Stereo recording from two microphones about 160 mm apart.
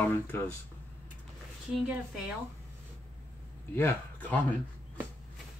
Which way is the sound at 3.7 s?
10° left (ahead or behind).